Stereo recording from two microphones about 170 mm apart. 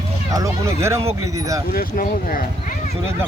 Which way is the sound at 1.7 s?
55° left (ahead or behind).